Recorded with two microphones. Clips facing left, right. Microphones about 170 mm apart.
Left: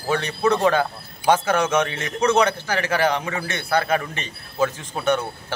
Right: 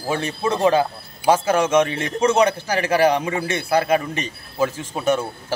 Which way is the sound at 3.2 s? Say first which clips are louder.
Right 4 dB; 25° right (ahead or behind).